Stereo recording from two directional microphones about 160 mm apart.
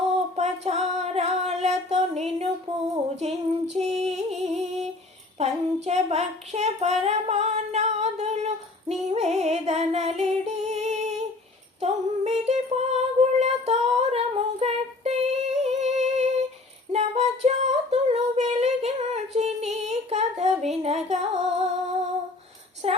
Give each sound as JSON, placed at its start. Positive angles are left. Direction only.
{"t": 0.3, "sound": "female singing", "side_deg": -45}
{"t": 3.2, "sound": "music", "side_deg": -40}
{"t": 5.4, "sound": "child singing", "side_deg": -40}
{"t": 11.8, "sound": "female singing", "side_deg": -45}
{"t": 22.8, "sound": "a sound", "side_deg": -40}